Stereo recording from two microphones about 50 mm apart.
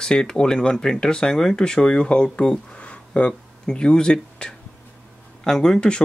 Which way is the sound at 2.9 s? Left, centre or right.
Left.